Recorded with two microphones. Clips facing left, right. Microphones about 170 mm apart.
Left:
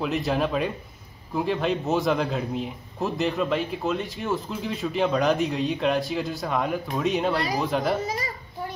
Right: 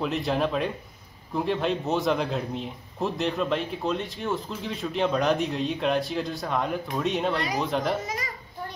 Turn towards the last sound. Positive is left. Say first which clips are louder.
# left 2 dB
turn(degrees=5)  # may be behind; listen again after turning